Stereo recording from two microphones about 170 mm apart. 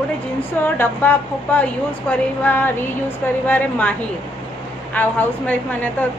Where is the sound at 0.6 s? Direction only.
10° left (ahead or behind).